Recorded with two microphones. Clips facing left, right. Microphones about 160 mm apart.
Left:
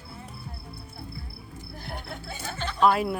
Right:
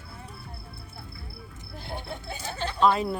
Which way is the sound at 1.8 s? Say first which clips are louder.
Right 3 dB; 25° right (ahead or behind).